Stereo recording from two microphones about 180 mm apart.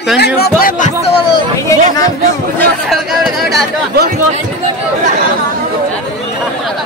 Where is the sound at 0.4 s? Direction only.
55° left (ahead or behind); by 1.4 s 35° left (ahead or behind).